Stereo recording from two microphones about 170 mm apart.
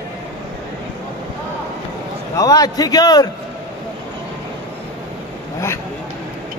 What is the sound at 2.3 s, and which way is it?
Speech, 20° left (ahead or behind).